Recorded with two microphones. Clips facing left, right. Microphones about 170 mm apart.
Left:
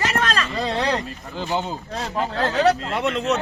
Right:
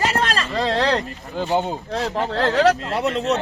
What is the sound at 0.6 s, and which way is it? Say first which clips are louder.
Speech: right 4 dB; 70° right (ahead or behind).